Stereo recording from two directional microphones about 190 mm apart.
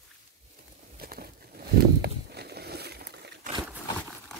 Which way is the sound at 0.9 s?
50° right (ahead or behind).